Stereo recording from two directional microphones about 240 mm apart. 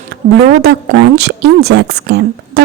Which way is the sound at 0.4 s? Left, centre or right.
Right.